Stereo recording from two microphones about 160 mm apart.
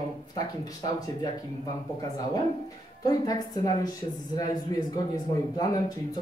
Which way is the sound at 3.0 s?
20° left (ahead or behind).